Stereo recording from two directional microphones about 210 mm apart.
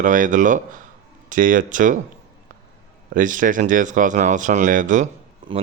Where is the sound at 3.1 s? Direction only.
40° right (ahead or behind).